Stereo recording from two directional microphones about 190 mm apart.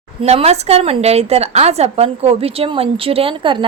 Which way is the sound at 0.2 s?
30° right (ahead or behind).